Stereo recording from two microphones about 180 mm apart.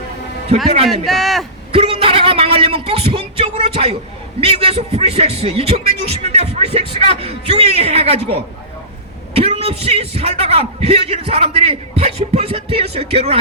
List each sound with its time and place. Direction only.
1.0 s a man's voice: centre (ahead or behind)
1.7 s a sound: 30° right (ahead or behind)
4.4 s a man's voice: 30° right (ahead or behind)